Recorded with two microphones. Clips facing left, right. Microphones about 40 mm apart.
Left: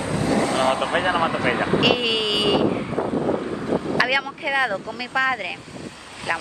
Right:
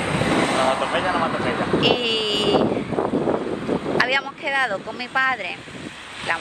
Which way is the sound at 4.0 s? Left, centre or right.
Centre.